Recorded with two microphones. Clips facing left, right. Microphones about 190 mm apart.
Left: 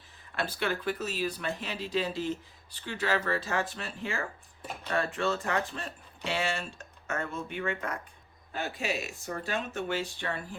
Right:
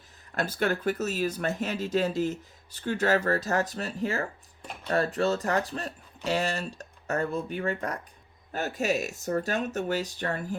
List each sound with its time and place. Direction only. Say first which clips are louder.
0.3 s speech: right 4 dB; 45° right (ahead or behind)